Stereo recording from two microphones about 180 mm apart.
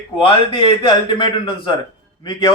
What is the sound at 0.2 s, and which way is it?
A man's voice, 30° left (ahead or behind).